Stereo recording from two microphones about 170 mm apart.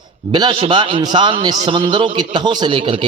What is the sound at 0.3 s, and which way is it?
A man's voice, 25° right (ahead or behind).